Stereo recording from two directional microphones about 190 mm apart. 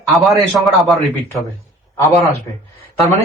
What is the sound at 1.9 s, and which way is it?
Speech, 15° left (ahead or behind).